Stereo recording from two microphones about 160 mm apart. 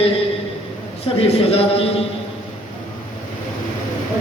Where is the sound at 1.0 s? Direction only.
40° left (ahead or behind).